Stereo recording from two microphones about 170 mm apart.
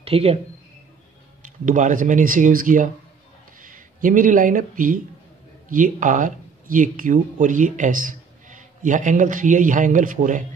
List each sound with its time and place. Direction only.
0.0 s speech: 35° right (ahead or behind)
1.4 s speech: 50° right (ahead or behind)